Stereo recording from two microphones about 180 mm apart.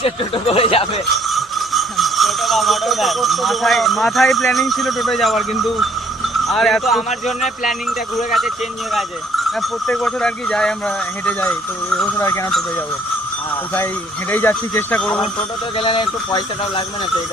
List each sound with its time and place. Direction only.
0.0 s speech: 30° left (ahead or behind)
1.3 s speech: centre (ahead or behind)
7.1 s speech: 40° left (ahead or behind)
8.3 s speech: centre (ahead or behind); by 12.5 s 15° left (ahead or behind)
14.3 s speech: 10° left (ahead or behind)
15.8 s speech: 30° left (ahead or behind)